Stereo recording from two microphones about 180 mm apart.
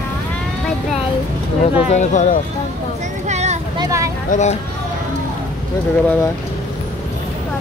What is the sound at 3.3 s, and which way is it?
Vehicle, 40° right (ahead or behind).